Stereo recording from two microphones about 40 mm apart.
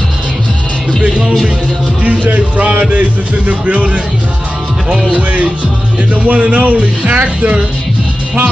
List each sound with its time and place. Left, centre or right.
2.0 s speech: right
5.1 s speech: right